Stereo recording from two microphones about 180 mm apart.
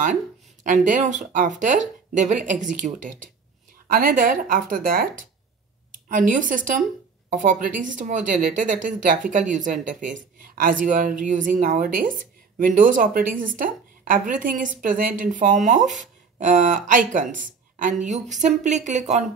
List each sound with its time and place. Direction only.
0.8 s a woman's voice: 45° right (ahead or behind)